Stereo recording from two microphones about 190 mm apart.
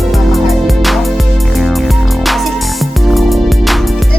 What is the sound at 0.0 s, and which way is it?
Music, centre (ahead or behind).